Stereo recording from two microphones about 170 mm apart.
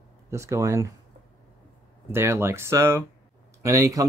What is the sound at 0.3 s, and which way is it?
Speech, 15° right (ahead or behind).